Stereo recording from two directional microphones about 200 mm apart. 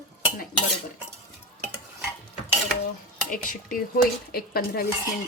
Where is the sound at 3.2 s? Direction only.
45° left (ahead or behind).